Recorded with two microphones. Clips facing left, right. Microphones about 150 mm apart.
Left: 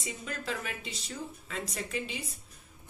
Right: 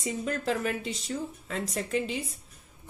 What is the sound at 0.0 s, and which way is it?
Speech, 45° right (ahead or behind).